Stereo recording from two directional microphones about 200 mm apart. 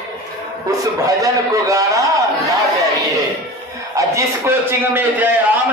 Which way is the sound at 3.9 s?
15° right (ahead or behind).